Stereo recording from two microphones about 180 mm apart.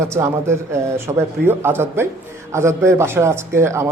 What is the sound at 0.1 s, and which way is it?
A man's voice, 15° right (ahead or behind).